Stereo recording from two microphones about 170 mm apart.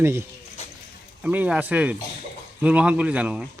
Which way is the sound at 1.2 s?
10° right (ahead or behind).